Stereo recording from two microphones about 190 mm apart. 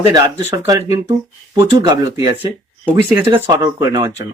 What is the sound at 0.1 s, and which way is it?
Speech, 15° right (ahead or behind).